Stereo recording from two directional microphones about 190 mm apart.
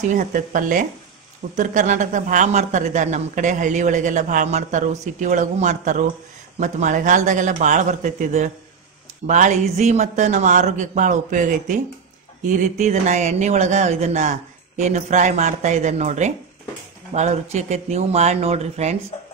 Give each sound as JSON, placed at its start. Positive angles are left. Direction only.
{"t": 0.1, "sound": "speech", "side_deg": -45}